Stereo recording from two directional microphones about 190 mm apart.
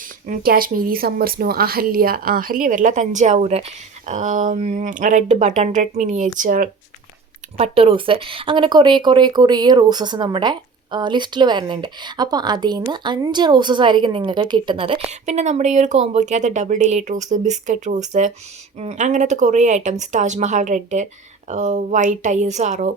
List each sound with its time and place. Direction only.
0.3 s speech: 50° right (ahead or behind)
7.5 s speech: 30° right (ahead or behind)